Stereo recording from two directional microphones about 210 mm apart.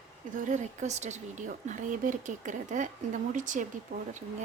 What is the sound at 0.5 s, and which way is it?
Speech, 35° right (ahead or behind).